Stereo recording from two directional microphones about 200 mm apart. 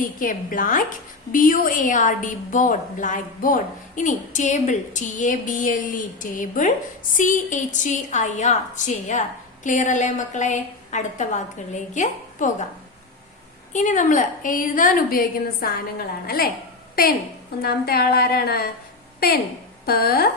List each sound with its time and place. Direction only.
0.0 s a woman's voice: 45° left (ahead or behind)
13.7 s a woman's voice: 40° left (ahead or behind)
19.8 s a woman's voice: 50° left (ahead or behind)